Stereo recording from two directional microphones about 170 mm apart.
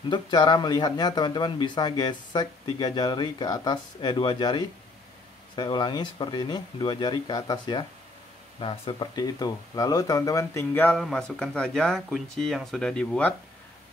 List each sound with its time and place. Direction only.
0.1 s speech: 25° left (ahead or behind); by 13.3 s 5° left (ahead or behind)